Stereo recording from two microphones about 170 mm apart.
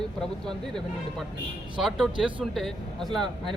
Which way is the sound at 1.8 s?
Centre (ahead or behind).